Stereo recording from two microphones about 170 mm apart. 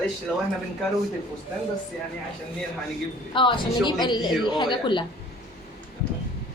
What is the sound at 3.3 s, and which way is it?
Speech, 30° left (ahead or behind).